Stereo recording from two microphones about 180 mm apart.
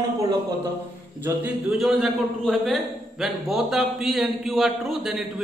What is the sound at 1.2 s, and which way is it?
A man's voice, 5° right (ahead or behind).